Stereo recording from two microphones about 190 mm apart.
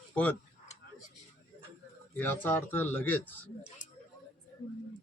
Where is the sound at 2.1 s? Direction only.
10° left (ahead or behind).